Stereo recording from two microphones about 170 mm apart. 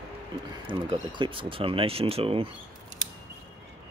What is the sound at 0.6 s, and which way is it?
Speech, 30° right (ahead or behind).